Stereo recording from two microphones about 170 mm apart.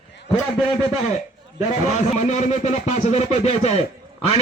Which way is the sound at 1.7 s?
40° left (ahead or behind).